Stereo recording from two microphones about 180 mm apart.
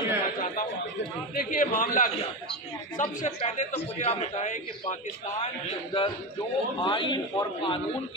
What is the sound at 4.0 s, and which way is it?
A man's voice, 40° left (ahead or behind).